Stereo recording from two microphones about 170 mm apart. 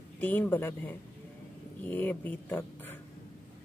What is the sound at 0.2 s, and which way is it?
Speech, 10° left (ahead or behind).